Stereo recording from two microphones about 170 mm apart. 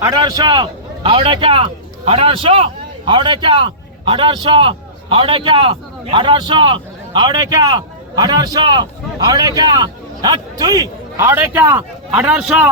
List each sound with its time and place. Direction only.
0.0 s a man's voice: 25° right (ahead or behind); by 12.7 s 5° right (ahead or behind)